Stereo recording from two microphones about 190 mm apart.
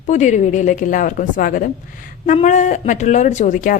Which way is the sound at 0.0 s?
40° left (ahead or behind).